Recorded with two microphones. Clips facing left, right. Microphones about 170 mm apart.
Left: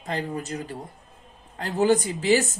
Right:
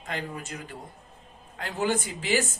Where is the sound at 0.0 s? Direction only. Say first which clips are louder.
Left 5 dB; 35° left (ahead or behind).